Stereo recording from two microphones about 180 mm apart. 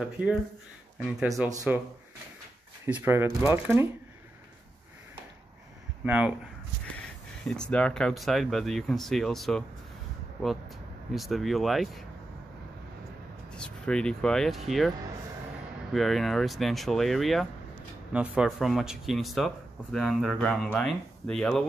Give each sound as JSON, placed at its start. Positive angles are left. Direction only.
{"t": 0.9, "sound": "speech", "side_deg": -5}
{"t": 1.3, "sound": "speech", "side_deg": -20}
{"t": 2.9, "sound": "speech", "side_deg": -15}
{"t": 6.0, "sound": "speech", "side_deg": -10}
{"t": 7.4, "sound": "speech", "side_deg": 5}
{"t": 11.1, "sound": "speech", "side_deg": 0}
{"t": 13.5, "sound": "speech", "side_deg": 5}
{"t": 15.9, "sound": "speech", "side_deg": 0}